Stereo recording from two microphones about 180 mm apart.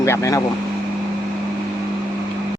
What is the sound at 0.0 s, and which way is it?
Speech, 15° left (ahead or behind).